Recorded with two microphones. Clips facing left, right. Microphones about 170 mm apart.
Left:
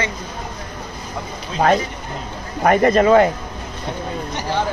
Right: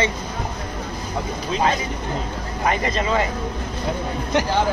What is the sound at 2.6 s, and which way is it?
Speech, 55° left (ahead or behind).